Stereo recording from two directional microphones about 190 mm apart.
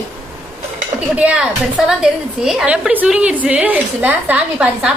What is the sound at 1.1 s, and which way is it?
A woman's voice, 5° right (ahead or behind).